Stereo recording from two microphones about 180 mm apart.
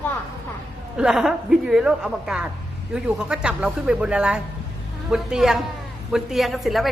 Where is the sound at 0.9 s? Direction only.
5° right (ahead or behind).